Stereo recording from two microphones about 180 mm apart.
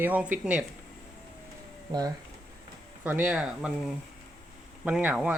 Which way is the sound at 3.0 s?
10° right (ahead or behind).